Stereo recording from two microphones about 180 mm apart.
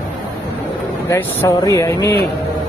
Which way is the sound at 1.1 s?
15° left (ahead or behind).